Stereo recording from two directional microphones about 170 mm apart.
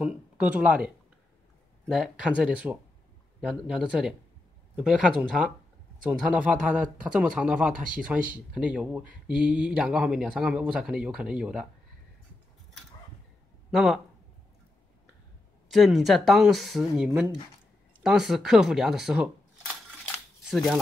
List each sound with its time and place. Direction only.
0.0 s speech: 5° right (ahead or behind)
13.7 s speech: centre (ahead or behind)
15.7 s speech: centre (ahead or behind)
20.4 s speech: centre (ahead or behind)